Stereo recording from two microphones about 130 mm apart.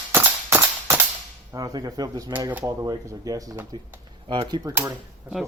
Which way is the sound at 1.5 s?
30° right (ahead or behind).